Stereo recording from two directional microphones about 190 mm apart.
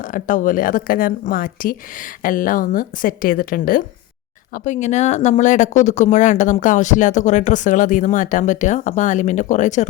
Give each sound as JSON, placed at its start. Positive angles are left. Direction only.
{"t": 0.1, "sound": "speech", "side_deg": 45}